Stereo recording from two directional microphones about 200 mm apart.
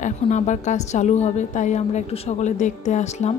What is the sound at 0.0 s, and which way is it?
Speech, 35° left (ahead or behind).